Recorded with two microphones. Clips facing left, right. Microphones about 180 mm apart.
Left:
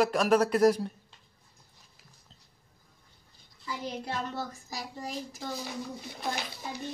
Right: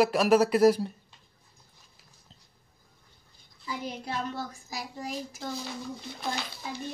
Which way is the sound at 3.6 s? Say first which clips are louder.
Even; 5° right (ahead or behind).